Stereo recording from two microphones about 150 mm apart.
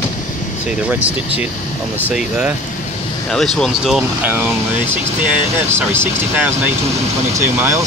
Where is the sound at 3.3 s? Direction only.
5° left (ahead or behind).